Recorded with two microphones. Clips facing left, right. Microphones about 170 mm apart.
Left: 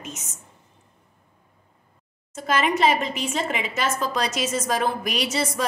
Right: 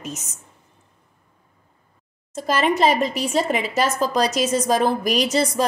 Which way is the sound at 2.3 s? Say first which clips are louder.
Right 3 dB; 35° right (ahead or behind).